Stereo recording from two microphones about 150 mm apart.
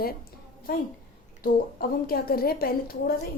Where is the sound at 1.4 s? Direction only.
75° left (ahead or behind).